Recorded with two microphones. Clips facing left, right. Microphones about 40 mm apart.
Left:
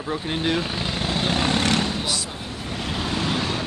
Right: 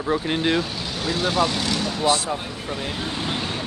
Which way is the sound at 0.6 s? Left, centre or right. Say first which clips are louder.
Left 1 dB; left.